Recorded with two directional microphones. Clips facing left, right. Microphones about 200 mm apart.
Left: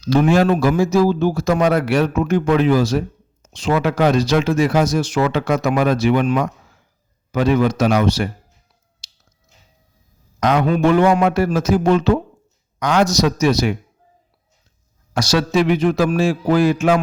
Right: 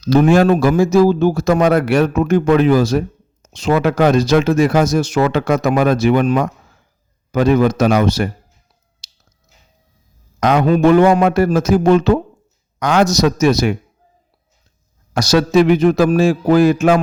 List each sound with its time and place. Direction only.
0.0 s speech: 40° right (ahead or behind)
10.4 s speech: 45° right (ahead or behind)
15.1 s speech: 45° right (ahead or behind)